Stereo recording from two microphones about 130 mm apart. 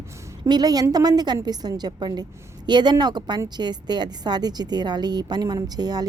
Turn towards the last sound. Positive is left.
turn(degrees=-30)  # may be behind; listen again after turning